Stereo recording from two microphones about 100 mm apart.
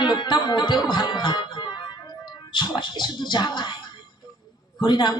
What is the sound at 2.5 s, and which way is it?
A man's voice, 50° left (ahead or behind).